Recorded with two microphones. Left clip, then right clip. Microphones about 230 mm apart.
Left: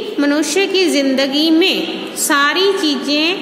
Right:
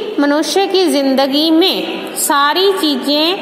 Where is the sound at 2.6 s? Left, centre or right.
Centre.